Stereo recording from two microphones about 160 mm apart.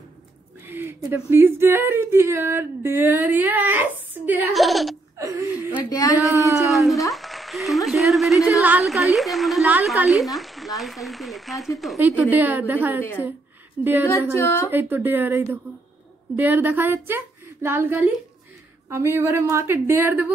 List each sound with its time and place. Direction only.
0.7 s speech: 15° right (ahead or behind)
4.5 s a woman's voice: centre (ahead or behind)
5.1 s a sound: 20° right (ahead or behind)
6.2 s speech: 20° right (ahead or behind)
6.7 s a woman's voice: centre (ahead or behind)
12.0 s speech: 10° right (ahead or behind)
14.3 s a woman's voice: 15° left (ahead or behind)
14.7 s speech: 10° right (ahead or behind)